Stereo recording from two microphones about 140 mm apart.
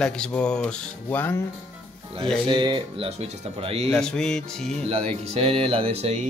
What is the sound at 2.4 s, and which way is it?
Speech, 35° right (ahead or behind).